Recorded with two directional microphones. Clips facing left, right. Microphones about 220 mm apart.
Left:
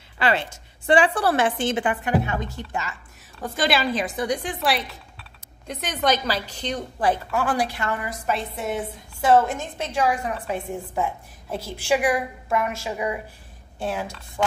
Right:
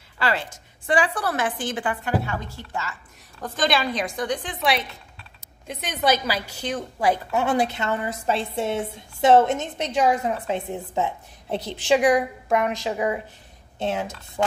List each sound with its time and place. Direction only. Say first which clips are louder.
0.2 s a woman's voice: left 2 dB; 20° left (ahead or behind); by 7.2 s 10° right (ahead or behind)
7.2 s a woman's voice: right 2 dB; 20° right (ahead or behind)